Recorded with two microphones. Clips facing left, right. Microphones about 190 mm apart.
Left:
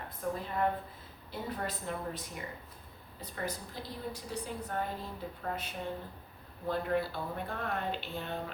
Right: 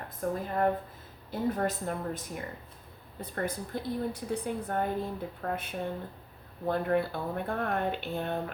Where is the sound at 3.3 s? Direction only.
55° right (ahead or behind).